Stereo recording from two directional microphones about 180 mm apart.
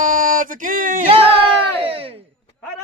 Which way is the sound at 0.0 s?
50° right (ahead or behind).